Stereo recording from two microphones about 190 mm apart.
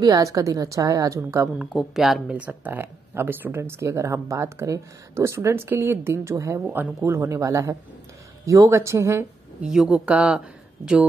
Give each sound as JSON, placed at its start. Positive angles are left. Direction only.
{"t": 0.0, "sound": "speech", "side_deg": -15}
{"t": 1.7, "sound": "speech", "side_deg": 0}
{"t": 9.7, "sound": "speech", "side_deg": -5}